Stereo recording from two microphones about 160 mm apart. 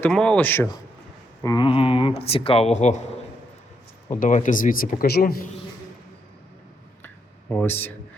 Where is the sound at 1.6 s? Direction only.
35° left (ahead or behind).